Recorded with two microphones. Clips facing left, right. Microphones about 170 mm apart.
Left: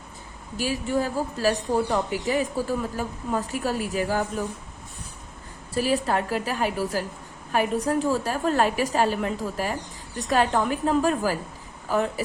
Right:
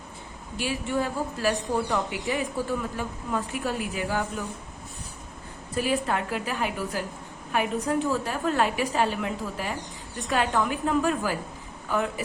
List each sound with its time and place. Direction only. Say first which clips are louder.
0.5 s a woman's voice: left 3 dB; 40° left (ahead or behind)
5.7 s a woman's voice: left 3 dB; 35° left (ahead or behind)